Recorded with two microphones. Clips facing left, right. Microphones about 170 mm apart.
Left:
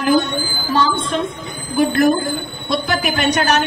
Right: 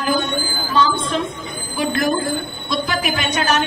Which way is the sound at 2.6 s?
65° left (ahead or behind).